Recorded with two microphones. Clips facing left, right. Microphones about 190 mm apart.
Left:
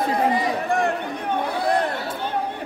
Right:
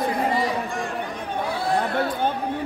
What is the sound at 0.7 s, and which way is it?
Chatter, 60° left (ahead or behind).